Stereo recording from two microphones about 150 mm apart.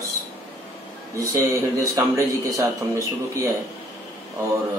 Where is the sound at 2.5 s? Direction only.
20° right (ahead or behind).